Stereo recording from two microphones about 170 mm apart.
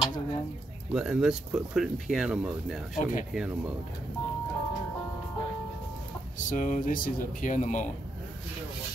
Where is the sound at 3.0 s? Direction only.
50° left (ahead or behind).